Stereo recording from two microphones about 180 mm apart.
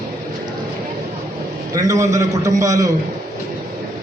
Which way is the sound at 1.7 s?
20° right (ahead or behind).